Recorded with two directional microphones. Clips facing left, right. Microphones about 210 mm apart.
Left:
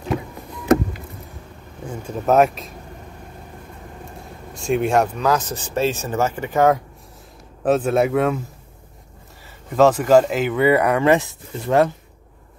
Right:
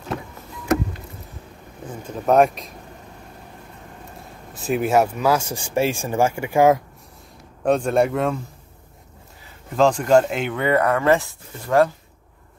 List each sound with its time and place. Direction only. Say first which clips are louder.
2.0 s speech: even; 5° left (ahead or behind)
4.2 s speech: left 3 dB; 5° right (ahead or behind)
7.6 s speech: left 1 dB; 5° left (ahead or behind)
9.8 s speech: left 2 dB; 5° left (ahead or behind); by 11.9 s 20° left (ahead or behind)